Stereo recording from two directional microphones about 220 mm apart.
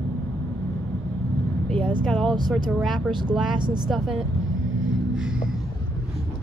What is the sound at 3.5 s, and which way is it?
Speech, 20° right (ahead or behind).